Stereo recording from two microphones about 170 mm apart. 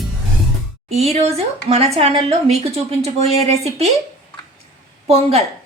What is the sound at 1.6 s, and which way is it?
A woman's voice, 35° right (ahead or behind).